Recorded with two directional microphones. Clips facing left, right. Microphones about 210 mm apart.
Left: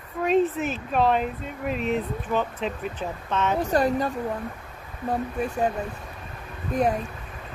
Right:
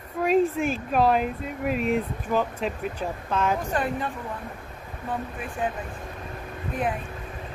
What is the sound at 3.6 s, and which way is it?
Speech, 40° left (ahead or behind).